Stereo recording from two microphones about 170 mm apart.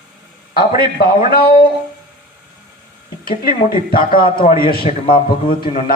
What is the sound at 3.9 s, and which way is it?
Speech, 60° left (ahead or behind).